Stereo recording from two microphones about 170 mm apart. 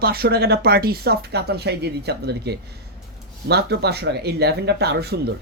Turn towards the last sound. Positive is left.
turn(degrees=-70)  # may be behind; listen again after turning